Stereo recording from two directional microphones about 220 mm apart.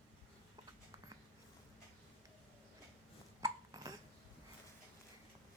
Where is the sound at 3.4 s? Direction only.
15° right (ahead or behind).